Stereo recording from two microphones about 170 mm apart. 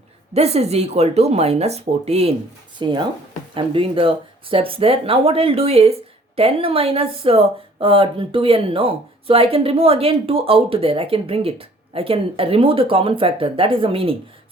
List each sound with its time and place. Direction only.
0.3 s speech: 40° right (ahead or behind)
2.7 s speech: 25° right (ahead or behind)